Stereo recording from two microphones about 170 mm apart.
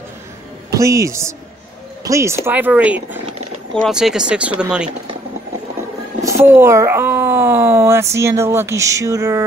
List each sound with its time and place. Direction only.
0.7 s speech: 20° right (ahead or behind)
6.2 s speech: 15° right (ahead or behind)